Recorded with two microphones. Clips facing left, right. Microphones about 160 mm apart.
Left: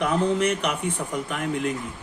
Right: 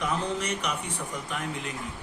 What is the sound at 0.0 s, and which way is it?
Speech, 55° left (ahead or behind).